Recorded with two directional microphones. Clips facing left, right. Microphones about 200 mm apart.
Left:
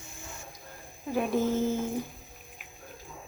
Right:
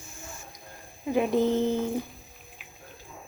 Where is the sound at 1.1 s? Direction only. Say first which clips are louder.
Right 4 dB; 15° right (ahead or behind).